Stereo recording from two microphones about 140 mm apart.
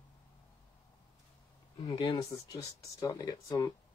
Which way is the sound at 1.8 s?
35° left (ahead or behind).